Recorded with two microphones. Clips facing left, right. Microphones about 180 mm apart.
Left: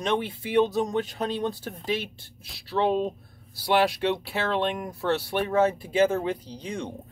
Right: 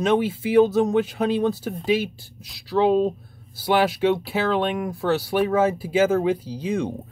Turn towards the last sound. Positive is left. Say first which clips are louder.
# right 8 dB
turn(degrees=-5)  # may be behind; listen again after turning